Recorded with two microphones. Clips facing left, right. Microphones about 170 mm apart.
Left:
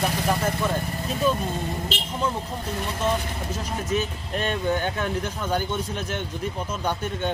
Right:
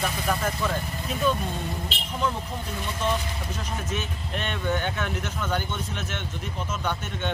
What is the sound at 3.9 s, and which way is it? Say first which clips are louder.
Speech: left 5 dB; 40° left (ahead or behind).